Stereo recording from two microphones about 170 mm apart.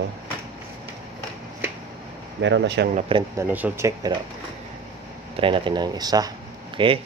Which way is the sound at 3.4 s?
10° right (ahead or behind).